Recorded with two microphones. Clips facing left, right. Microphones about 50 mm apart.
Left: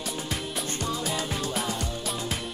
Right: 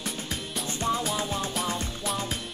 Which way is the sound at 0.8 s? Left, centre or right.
Right.